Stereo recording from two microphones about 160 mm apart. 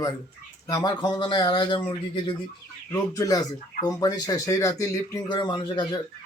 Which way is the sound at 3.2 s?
20° left (ahead or behind).